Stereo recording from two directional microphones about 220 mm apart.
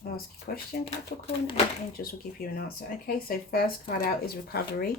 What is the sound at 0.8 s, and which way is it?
Speech, 25° left (ahead or behind).